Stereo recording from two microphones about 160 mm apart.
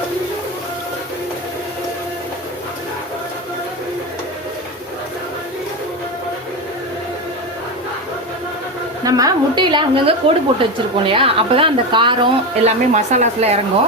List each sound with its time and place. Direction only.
9.0 s a woman's voice: 20° right (ahead or behind)
12.6 s speech: 45° right (ahead or behind)